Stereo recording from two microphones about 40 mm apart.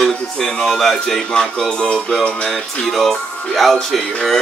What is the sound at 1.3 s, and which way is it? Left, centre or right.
Music, centre.